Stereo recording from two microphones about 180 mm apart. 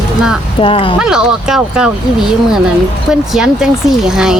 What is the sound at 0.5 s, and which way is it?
Speech, 30° left (ahead or behind).